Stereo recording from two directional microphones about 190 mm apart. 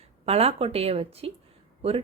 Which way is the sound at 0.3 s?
30° right (ahead or behind).